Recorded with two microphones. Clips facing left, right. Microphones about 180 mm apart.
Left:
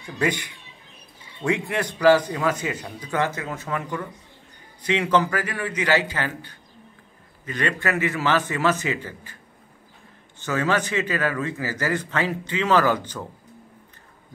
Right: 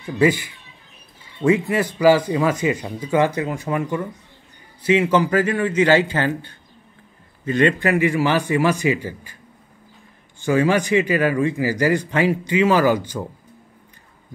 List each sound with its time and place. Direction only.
0.2 s a man's voice: 5° right (ahead or behind)
5.3 s a man's voice: 25° right (ahead or behind)
7.9 s a man's voice: 15° right (ahead or behind)
10.4 s a man's voice: 10° right (ahead or behind)